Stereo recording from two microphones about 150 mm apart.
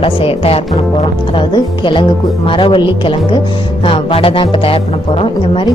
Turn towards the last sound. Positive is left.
turn(degrees=40)  # may be behind; listen again after turning